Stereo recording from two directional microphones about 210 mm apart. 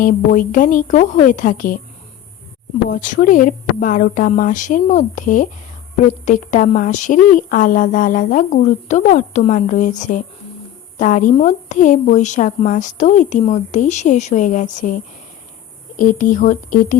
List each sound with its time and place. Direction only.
0.0 s a woman's voice: 40° left (ahead or behind)
2.9 s a woman's voice: 40° left (ahead or behind)